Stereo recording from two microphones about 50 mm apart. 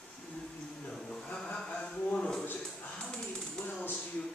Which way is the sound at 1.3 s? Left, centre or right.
Centre.